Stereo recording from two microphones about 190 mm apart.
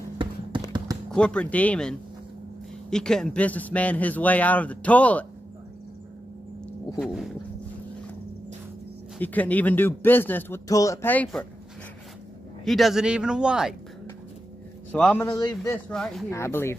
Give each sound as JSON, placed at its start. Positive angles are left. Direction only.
{"t": 0.2, "sound": "a sound", "side_deg": -25}
{"t": 1.1, "sound": "a man's voice", "side_deg": 5}
{"t": 7.0, "sound": "a man's voice", "side_deg": 0}
{"t": 9.2, "sound": "a man's voice", "side_deg": 10}
{"t": 12.6, "sound": "a man's voice", "side_deg": 0}
{"t": 14.9, "sound": "a man's voice", "side_deg": 5}
{"t": 15.2, "sound": "a man's voice", "side_deg": 20}
{"t": 15.9, "sound": "a man's voice", "side_deg": 0}
{"t": 16.3, "sound": "a man's voice", "side_deg": 15}